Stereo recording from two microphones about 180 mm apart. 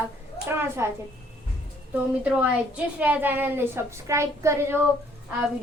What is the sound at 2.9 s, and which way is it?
A woman's voice, 10° right (ahead or behind).